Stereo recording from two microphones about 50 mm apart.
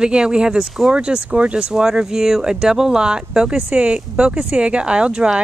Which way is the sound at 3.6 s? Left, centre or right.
Right.